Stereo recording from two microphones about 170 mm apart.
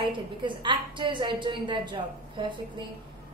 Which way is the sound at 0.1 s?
30° right (ahead or behind).